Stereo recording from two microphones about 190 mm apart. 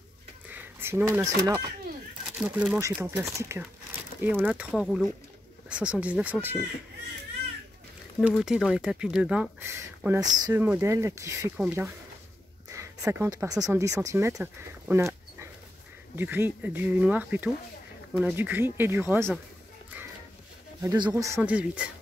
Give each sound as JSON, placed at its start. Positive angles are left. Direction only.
{"t": 0.5, "sound": "speech", "side_deg": -10}
{"t": 2.3, "sound": "speech", "side_deg": -5}
{"t": 8.2, "sound": "speech", "side_deg": -5}
{"t": 20.8, "sound": "speech", "side_deg": -20}
{"t": 21.4, "sound": "speech", "side_deg": -5}